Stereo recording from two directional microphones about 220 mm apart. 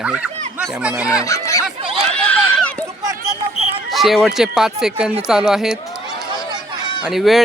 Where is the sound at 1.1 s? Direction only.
15° left (ahead or behind).